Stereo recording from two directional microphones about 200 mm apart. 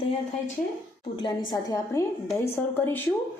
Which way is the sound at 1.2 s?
20° left (ahead or behind).